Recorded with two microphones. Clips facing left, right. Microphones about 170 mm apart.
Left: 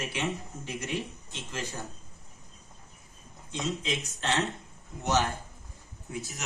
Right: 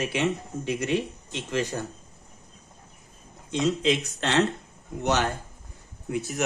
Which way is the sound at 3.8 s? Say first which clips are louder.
Right 9 dB; 70° right (ahead or behind).